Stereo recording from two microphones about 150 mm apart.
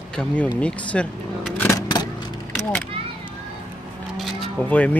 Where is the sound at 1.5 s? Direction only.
20° left (ahead or behind).